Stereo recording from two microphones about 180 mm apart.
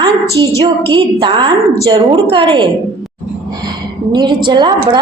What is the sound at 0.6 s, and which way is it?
A woman's voice, 25° right (ahead or behind).